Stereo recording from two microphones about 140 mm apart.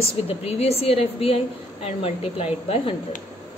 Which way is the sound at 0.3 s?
45° left (ahead or behind).